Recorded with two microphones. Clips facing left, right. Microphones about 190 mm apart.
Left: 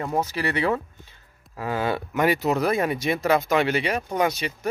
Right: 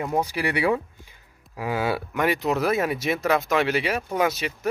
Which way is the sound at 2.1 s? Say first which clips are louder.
Left 3 dB; centre (ahead or behind).